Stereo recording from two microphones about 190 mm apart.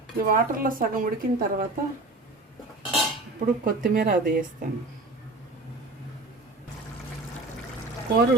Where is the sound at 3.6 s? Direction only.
45° right (ahead or behind).